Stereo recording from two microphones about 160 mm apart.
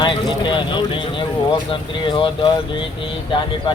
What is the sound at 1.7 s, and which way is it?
Speech, 30° left (ahead or behind).